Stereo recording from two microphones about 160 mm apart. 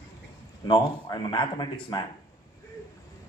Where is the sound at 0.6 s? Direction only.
25° left (ahead or behind).